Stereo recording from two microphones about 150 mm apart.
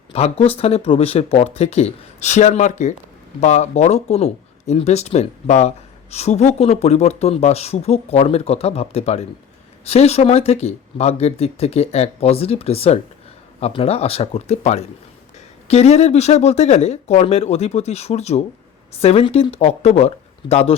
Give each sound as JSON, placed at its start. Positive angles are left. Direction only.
{"t": 0.1, "sound": "speech", "side_deg": 40}